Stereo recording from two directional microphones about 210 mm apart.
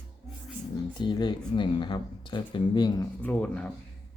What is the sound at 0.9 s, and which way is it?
Speech, 20° left (ahead or behind).